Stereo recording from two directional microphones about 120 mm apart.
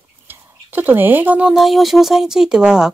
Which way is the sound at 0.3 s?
15° right (ahead or behind).